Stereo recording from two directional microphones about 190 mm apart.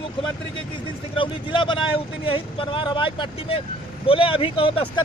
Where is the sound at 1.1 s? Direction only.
25° left (ahead or behind).